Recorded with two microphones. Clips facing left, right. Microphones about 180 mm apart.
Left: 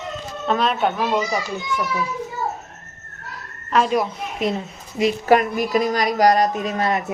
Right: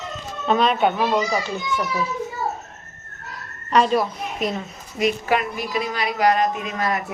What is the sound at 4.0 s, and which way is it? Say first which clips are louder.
Speech: left 1 dB; 25° left (ahead or behind).